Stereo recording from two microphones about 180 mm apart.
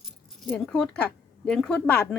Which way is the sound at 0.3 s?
Centre (ahead or behind).